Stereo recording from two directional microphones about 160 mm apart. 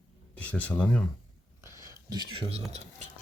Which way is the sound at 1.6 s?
15° right (ahead or behind).